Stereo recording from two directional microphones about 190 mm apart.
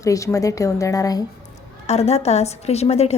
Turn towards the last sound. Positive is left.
turn(degrees=35)  # may be behind; listen again after turning